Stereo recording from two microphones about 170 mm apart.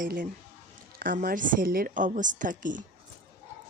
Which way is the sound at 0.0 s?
60° right (ahead or behind).